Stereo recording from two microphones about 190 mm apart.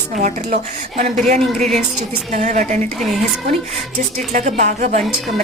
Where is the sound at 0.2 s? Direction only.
45° right (ahead or behind).